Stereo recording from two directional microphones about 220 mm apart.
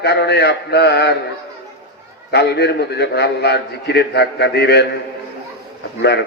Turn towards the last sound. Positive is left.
turn(degrees=50)  # may be behind; listen again after turning